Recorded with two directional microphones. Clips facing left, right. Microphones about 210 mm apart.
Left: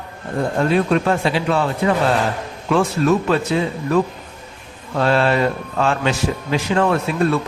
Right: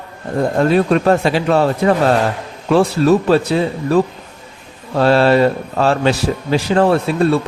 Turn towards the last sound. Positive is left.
turn(degrees=-30)  # may be behind; listen again after turning